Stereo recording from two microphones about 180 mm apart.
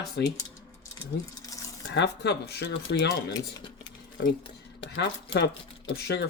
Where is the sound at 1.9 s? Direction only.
65° left (ahead or behind).